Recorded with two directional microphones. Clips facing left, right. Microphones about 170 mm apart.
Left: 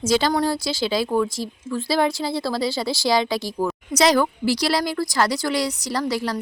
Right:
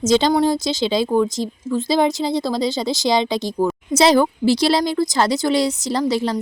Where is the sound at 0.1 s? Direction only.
20° right (ahead or behind).